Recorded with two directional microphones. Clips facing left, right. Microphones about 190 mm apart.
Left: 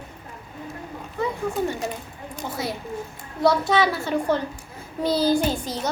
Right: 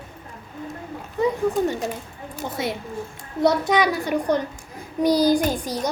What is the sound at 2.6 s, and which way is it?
A child's voice, 25° right (ahead or behind).